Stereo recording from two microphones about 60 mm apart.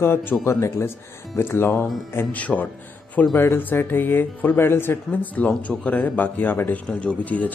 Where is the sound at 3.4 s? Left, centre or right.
Left.